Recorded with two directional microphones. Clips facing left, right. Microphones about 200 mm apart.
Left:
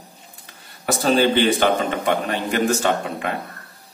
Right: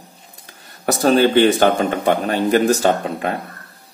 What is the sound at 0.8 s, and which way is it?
A man's voice, 45° right (ahead or behind).